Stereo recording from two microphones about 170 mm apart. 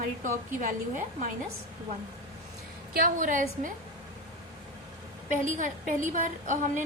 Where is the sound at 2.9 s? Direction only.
55° right (ahead or behind).